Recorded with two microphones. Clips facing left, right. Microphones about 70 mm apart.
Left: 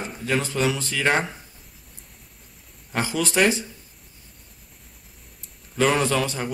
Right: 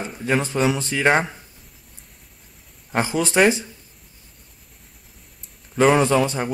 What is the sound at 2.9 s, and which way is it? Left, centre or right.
Speech, right.